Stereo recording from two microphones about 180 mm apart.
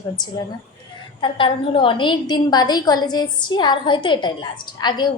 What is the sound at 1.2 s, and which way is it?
A woman's voice, 30° left (ahead or behind).